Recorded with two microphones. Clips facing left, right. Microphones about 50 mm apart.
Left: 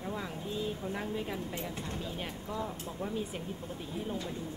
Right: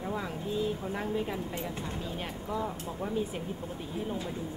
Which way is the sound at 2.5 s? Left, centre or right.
Centre.